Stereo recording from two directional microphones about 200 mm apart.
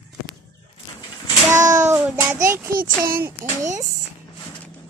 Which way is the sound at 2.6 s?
45° right (ahead or behind).